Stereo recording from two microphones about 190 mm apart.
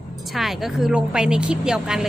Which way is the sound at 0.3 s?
Centre (ahead or behind).